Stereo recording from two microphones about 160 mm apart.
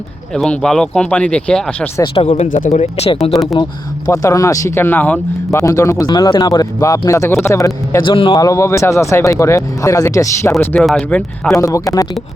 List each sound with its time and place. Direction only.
0.3 s speech: 5° left (ahead or behind)
2.1 s speech: 35° left (ahead or behind)
3.3 s speech: centre (ahead or behind)
3.6 s speech: 25° left (ahead or behind)
5.5 s speech: 20° left (ahead or behind)
10.8 s speech: centre (ahead or behind)
11.5 s speech: 20° left (ahead or behind)